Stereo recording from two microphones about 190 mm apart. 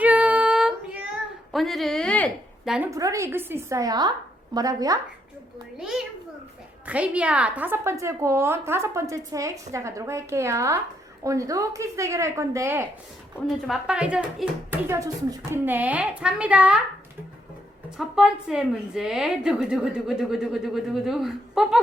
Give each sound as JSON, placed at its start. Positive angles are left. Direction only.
{"t": 0.0, "sound": "child singing", "side_deg": -10}
{"t": 1.5, "sound": "a woman's voice", "side_deg": 0}
{"t": 2.6, "sound": "a woman's voice", "side_deg": -5}
{"t": 2.9, "sound": "speech", "side_deg": -15}
{"t": 5.7, "sound": "a woman's voice", "side_deg": -5}
{"t": 17.9, "sound": "a woman's voice", "side_deg": 0}